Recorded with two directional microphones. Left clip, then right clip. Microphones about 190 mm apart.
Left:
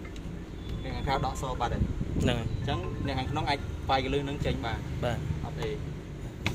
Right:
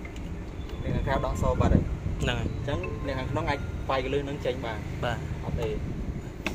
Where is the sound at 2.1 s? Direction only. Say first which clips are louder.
Even; 30° left (ahead or behind).